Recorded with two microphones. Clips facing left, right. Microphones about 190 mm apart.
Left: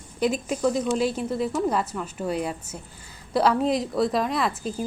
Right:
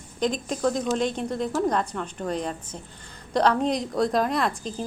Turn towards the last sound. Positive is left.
turn(degrees=5)  # may be behind; listen again after turning